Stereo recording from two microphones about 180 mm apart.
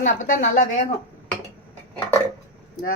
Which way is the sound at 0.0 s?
40° left (ahead or behind).